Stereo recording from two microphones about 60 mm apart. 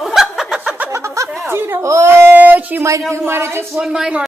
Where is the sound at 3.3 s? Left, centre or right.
Right.